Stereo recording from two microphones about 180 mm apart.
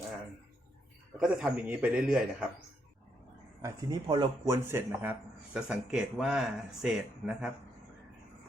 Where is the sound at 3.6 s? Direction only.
25° right (ahead or behind).